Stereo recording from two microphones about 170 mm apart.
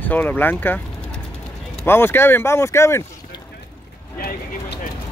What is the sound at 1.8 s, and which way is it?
Speech, 15° left (ahead or behind).